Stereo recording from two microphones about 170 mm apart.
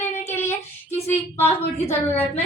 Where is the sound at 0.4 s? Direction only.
15° left (ahead or behind).